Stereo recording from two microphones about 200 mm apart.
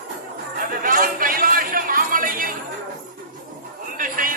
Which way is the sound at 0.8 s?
45° right (ahead or behind).